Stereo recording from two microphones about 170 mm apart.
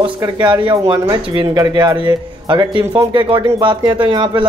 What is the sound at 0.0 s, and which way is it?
A man's voice, 25° right (ahead or behind).